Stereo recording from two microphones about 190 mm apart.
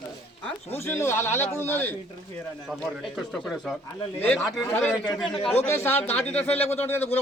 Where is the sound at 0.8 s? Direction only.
15° left (ahead or behind).